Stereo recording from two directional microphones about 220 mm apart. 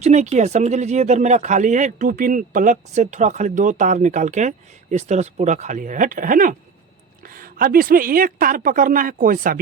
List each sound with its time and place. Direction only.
0.0 s speech: 30° right (ahead or behind)